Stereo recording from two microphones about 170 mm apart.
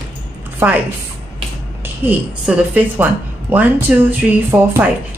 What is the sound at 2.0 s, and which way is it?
A woman's voice, 10° right (ahead or behind).